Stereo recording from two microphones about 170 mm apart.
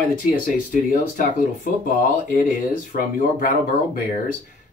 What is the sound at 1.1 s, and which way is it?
Speech, 50° left (ahead or behind).